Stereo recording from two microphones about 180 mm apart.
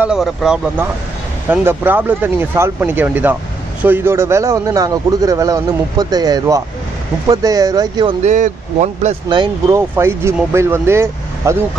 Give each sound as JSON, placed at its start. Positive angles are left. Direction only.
{"t": 0.0, "sound": "a man's voice", "side_deg": -5}
{"t": 8.3, "sound": "speech", "side_deg": -40}
{"t": 9.3, "sound": "a man's voice", "side_deg": -25}
{"t": 9.8, "sound": "speech", "side_deg": -15}